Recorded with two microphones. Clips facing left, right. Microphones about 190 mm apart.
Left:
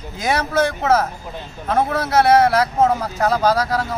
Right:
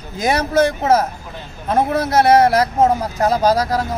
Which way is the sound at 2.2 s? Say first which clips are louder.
Right 2 dB; 40° right (ahead or behind).